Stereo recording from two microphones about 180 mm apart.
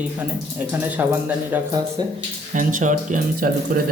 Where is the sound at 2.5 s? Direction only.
45° right (ahead or behind).